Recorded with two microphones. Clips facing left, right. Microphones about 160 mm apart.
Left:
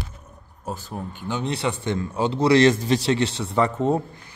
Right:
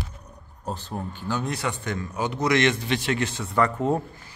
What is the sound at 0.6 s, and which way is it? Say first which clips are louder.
Speech: even; 15° left (ahead or behind).